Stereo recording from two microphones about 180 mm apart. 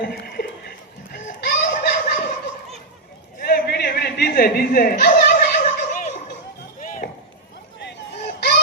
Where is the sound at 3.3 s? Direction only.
55° left (ahead or behind).